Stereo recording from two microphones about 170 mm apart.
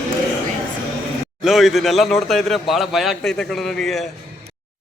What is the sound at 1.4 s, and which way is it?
A man's voice, centre (ahead or behind).